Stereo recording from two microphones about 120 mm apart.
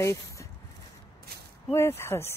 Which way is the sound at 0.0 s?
25° left (ahead or behind).